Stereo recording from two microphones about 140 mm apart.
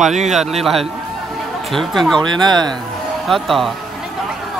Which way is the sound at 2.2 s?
30° right (ahead or behind).